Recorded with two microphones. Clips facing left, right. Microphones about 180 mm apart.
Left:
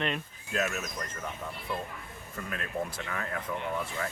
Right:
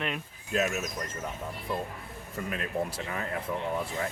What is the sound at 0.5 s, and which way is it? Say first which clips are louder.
Speech: right 3 dB; 20° right (ahead or behind).